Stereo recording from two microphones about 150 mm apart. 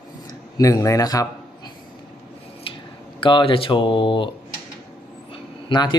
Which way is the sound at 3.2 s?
35° left (ahead or behind).